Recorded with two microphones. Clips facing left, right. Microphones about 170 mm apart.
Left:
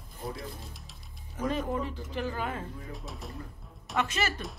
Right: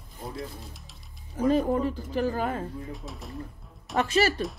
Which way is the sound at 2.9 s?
Centre (ahead or behind).